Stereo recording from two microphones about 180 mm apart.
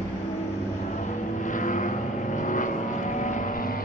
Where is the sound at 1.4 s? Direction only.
45° left (ahead or behind).